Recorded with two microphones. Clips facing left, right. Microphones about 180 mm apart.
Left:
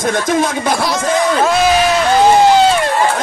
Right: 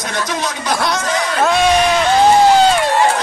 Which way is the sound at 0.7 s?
Centre (ahead or behind).